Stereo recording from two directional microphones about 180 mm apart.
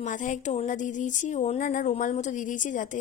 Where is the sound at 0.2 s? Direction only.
40° left (ahead or behind).